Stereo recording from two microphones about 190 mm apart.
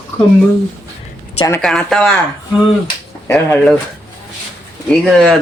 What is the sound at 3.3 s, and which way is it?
Speech, 10° left (ahead or behind).